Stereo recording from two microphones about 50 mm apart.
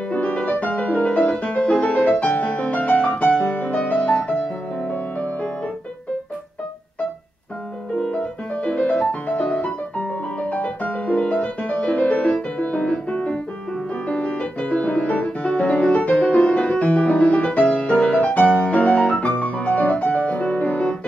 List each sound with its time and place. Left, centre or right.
0.1 s music: left
8.0 s music: left